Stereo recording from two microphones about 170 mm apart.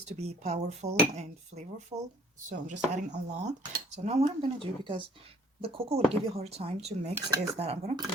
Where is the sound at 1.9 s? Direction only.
25° right (ahead or behind).